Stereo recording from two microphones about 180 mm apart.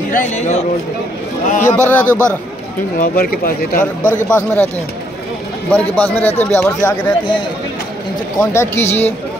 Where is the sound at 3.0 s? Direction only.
55° left (ahead or behind).